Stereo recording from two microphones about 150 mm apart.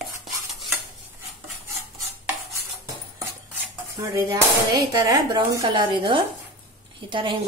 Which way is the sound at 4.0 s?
25° right (ahead or behind).